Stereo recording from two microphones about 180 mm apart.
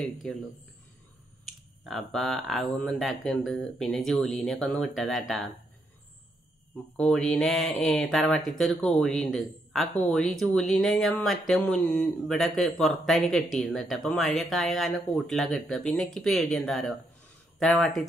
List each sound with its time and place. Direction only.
0.0 s speech: centre (ahead or behind)
1.9 s speech: centre (ahead or behind)
7.0 s speech: 5° left (ahead or behind)